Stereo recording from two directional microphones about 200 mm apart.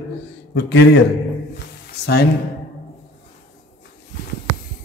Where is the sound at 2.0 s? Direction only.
55° left (ahead or behind).